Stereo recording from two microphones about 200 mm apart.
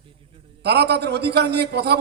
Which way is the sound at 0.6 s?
55° right (ahead or behind).